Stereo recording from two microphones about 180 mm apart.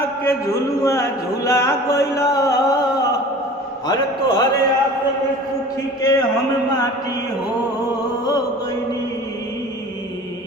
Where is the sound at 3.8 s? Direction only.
25° left (ahead or behind).